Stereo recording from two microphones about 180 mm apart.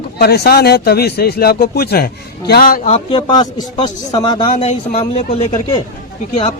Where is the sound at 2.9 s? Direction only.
25° left (ahead or behind).